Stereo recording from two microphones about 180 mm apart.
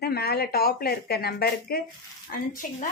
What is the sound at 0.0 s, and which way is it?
A woman's voice, 60° left (ahead or behind).